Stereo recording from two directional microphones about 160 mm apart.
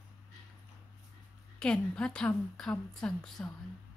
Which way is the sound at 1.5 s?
5° left (ahead or behind).